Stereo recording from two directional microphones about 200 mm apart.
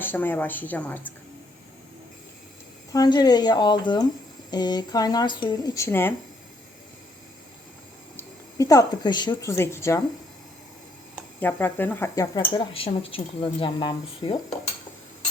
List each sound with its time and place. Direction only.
0.0 s speech: 10° left (ahead or behind)
2.9 s speech: 20° left (ahead or behind)
8.1 s speech: 15° left (ahead or behind)
11.3 s speech: 10° left (ahead or behind)